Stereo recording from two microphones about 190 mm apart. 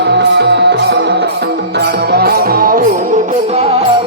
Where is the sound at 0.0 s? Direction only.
65° right (ahead or behind).